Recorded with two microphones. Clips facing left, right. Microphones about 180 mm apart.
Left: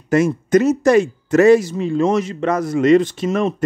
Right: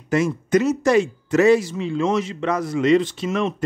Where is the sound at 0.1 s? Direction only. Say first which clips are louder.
Left 4 dB; 45° left (ahead or behind).